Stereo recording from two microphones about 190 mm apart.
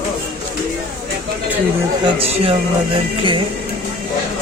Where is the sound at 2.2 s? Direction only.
30° right (ahead or behind).